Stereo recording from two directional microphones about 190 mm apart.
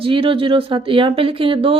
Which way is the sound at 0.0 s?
30° right (ahead or behind).